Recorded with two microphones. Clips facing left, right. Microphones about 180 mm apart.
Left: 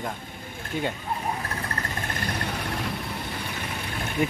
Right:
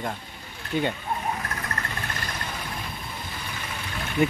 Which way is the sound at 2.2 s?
60° left (ahead or behind).